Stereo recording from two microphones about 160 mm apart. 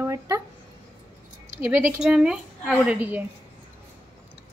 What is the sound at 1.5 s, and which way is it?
A woman's voice, 15° right (ahead or behind).